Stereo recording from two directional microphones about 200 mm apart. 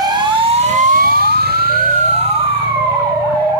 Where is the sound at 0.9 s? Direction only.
50° right (ahead or behind).